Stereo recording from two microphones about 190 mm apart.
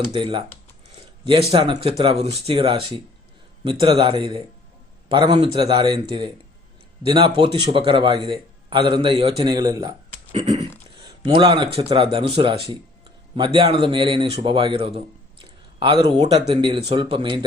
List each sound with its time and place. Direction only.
0.0 s a man's voice: 25° right (ahead or behind)
10.3 s a sound: 30° right (ahead or behind)
11.3 s a man's voice: 25° right (ahead or behind)